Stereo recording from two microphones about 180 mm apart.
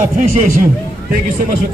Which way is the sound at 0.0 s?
50° right (ahead or behind).